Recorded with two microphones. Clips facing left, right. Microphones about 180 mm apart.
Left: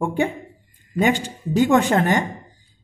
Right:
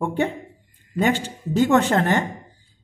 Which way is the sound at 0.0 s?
10° left (ahead or behind).